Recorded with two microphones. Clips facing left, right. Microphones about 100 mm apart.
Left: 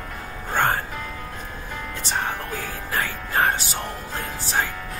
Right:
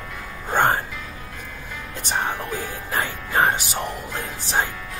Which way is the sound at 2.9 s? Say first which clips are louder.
Right 2 dB; 20° right (ahead or behind).